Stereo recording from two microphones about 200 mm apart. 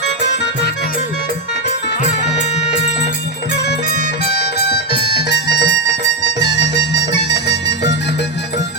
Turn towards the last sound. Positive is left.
turn(degrees=60)  # may be behind; listen again after turning